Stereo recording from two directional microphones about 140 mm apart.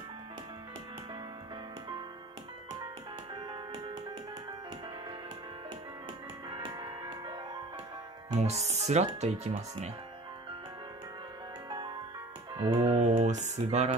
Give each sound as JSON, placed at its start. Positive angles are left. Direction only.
{"t": 3.4, "sound": "music", "side_deg": -35}
{"t": 6.7, "sound": "music", "side_deg": -30}
{"t": 8.4, "sound": "speech", "side_deg": -50}
{"t": 12.5, "sound": "speech", "side_deg": -40}